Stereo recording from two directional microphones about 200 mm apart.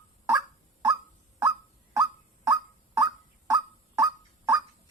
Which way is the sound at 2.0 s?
15° right (ahead or behind).